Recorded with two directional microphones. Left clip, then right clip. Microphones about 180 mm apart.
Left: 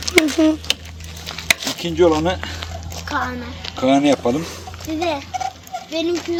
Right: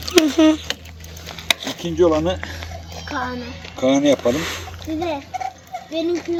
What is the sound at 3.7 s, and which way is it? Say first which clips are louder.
Speech: left 1 dB; 35° left (ahead or behind).